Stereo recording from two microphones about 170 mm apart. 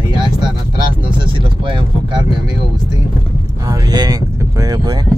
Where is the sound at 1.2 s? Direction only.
30° right (ahead or behind).